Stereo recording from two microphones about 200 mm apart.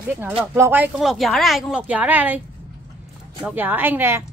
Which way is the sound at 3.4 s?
10° right (ahead or behind).